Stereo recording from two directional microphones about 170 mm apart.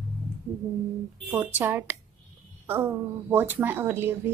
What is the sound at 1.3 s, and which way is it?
Speech, 10° right (ahead or behind).